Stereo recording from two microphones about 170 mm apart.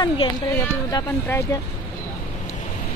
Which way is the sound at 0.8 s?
20° left (ahead or behind).